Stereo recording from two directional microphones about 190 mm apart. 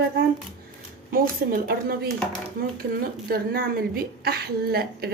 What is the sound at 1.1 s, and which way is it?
Speech, 50° right (ahead or behind).